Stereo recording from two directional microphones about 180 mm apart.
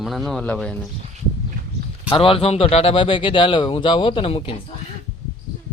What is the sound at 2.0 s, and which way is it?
Speech, 30° left (ahead or behind).